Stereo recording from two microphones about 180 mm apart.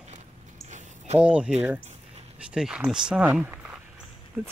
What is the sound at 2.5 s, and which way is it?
Speech, 5° right (ahead or behind).